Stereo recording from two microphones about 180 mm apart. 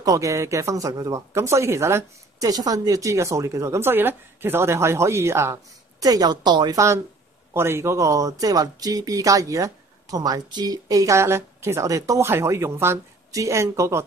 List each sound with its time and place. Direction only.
0.0 s speech: 20° right (ahead or behind)